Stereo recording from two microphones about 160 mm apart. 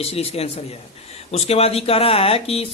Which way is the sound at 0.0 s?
40° left (ahead or behind).